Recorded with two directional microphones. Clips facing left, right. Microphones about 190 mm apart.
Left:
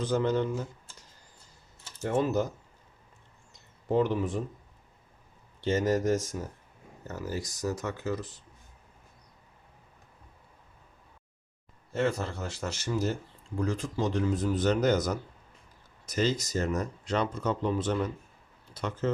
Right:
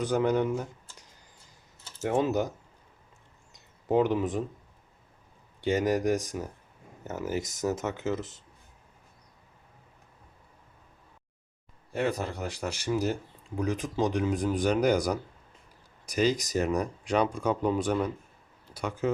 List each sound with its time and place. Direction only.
0.0 s speech: 15° right (ahead or behind)
2.0 s speech: 20° right (ahead or behind)
3.5 s a sound: 20° right (ahead or behind)
5.5 s speech: 15° right (ahead or behind)
11.9 s speech: 15° right (ahead or behind)